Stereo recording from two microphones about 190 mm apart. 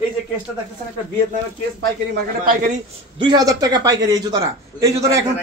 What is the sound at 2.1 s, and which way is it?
Speech, 45° right (ahead or behind).